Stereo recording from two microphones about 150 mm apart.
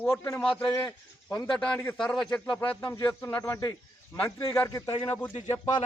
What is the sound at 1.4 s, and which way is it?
A man's voice, 5° left (ahead or behind).